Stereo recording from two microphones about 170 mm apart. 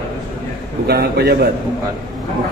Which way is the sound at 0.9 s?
70° right (ahead or behind).